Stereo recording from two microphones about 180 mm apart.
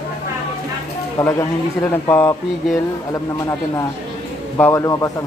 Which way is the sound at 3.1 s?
20° left (ahead or behind).